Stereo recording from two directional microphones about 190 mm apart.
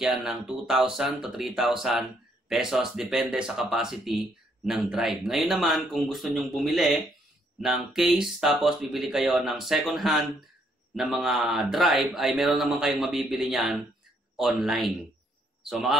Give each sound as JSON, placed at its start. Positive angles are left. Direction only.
{"t": 0.0, "sound": "a man's voice", "side_deg": 0}